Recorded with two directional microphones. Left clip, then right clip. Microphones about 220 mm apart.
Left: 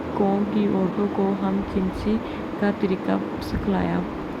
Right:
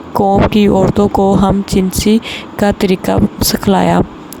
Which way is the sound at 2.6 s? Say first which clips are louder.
Right 12 dB; 55° right (ahead or behind).